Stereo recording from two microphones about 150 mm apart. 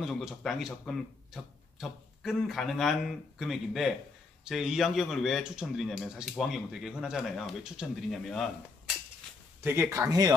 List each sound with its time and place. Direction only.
0.0 s speech: centre (ahead or behind)
9.6 s speech: 15° right (ahead or behind)